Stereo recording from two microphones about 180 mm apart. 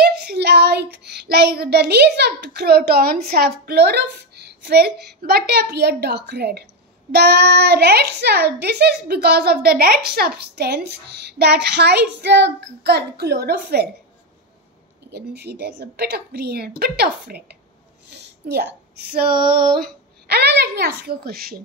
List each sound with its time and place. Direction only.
0.0 s child singing: 65° right (ahead or behind)
10.0 s a woman's voice: 60° right (ahead or behind)
15.0 s a woman's voice: 65° right (ahead or behind)
18.1 s female singing: 65° right (ahead or behind)